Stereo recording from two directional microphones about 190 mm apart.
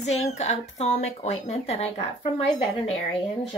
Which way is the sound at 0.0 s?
35° left (ahead or behind).